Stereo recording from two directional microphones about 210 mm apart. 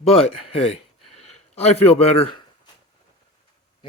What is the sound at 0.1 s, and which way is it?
A man's voice, 30° left (ahead or behind).